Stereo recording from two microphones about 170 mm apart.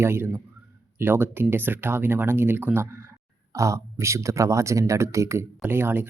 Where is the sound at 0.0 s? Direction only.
15° right (ahead or behind).